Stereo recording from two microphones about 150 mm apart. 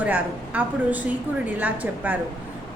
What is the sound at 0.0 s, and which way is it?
A woman's voice, 10° right (ahead or behind).